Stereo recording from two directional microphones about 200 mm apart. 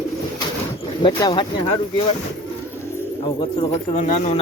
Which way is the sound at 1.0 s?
25° left (ahead or behind).